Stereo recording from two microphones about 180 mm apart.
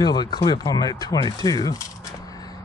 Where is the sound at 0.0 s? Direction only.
25° left (ahead or behind).